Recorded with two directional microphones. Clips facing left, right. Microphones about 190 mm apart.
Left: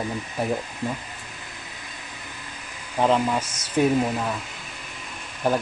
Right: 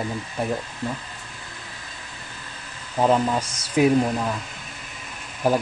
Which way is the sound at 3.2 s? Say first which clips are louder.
Right 1 dB; 10° right (ahead or behind).